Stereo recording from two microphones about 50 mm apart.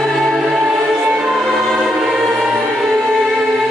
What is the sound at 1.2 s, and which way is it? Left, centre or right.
Music, centre.